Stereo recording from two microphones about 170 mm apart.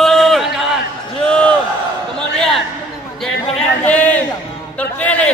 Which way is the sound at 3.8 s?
10° left (ahead or behind).